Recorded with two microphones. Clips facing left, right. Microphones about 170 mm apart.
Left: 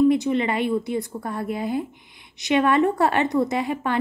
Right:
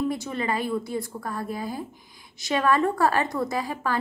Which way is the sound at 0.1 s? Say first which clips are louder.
Left 7 dB; 20° left (ahead or behind).